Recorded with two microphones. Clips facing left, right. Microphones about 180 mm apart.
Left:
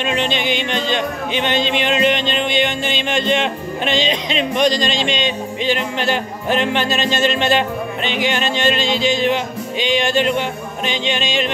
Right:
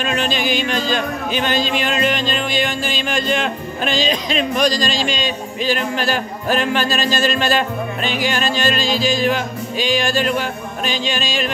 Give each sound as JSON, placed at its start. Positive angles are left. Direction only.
{"t": 0.0, "sound": "speech", "side_deg": 25}